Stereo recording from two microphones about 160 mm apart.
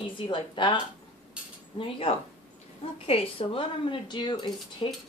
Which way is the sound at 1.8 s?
35° left (ahead or behind).